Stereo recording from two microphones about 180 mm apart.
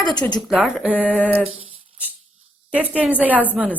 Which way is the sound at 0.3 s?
Centre (ahead or behind).